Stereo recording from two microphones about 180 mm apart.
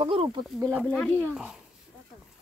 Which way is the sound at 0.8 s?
Centre (ahead or behind).